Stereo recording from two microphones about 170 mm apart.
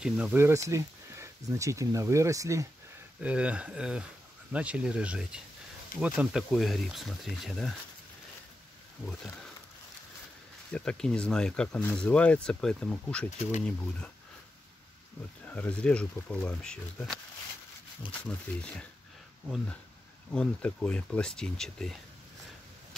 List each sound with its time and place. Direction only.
0.0 s speech: 10° right (ahead or behind)
3.2 s speech: 5° right (ahead or behind)
10.7 s speech: 5° left (ahead or behind)
15.4 s speech: 10° left (ahead or behind)
18.2 s speech: 5° left (ahead or behind)
20.3 s speech: 5° left (ahead or behind)